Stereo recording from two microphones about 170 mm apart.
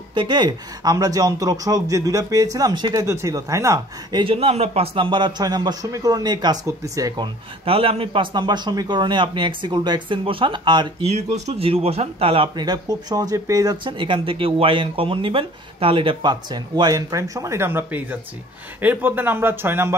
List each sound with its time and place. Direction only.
0.1 s speech: 25° right (ahead or behind)
4.2 s speech: 35° right (ahead or behind)
7.6 s speech: 35° right (ahead or behind)
11.1 s speech: 40° right (ahead or behind); by 20.0 s 15° right (ahead or behind)